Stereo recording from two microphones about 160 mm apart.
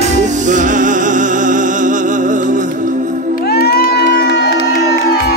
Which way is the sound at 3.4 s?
75° left (ahead or behind).